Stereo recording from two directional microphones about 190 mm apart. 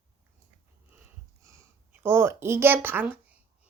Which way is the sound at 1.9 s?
10° right (ahead or behind).